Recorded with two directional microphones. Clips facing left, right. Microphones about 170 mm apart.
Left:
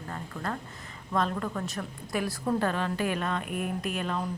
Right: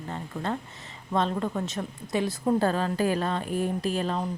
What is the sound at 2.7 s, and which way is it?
Speech, 35° right (ahead or behind).